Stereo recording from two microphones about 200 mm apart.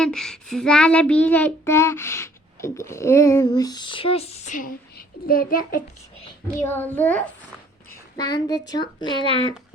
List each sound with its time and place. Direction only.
0.0 s child singing: 5° left (ahead or behind); by 5.8 s 45° left (ahead or behind)
6.6 s child singing: 10° left (ahead or behind)
8.1 s a child's voice: 20° left (ahead or behind)